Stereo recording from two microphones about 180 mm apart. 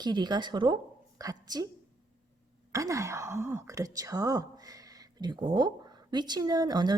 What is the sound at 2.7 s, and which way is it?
Speech, 20° right (ahead or behind).